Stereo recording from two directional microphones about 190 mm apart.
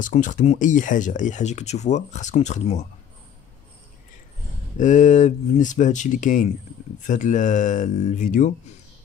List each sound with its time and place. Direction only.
0.0 s speech: 40° left (ahead or behind)
4.7 s speech: 40° left (ahead or behind)